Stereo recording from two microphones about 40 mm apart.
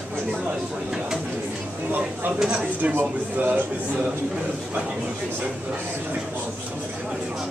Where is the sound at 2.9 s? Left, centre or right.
Right.